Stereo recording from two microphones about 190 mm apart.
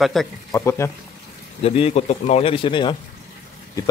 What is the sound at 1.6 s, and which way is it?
A man's voice, 30° left (ahead or behind).